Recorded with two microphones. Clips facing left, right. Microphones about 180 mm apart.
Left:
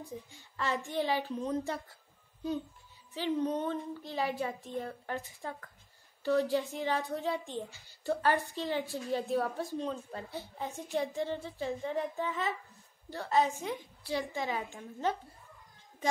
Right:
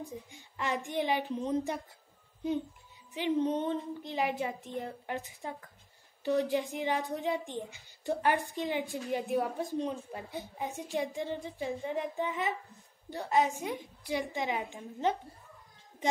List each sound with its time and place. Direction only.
0.3 s a child's voice: 15° right (ahead or behind)
3.2 s a child's voice: 20° right (ahead or behind)